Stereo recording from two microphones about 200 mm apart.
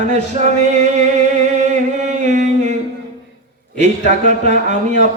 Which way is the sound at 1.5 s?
35° right (ahead or behind).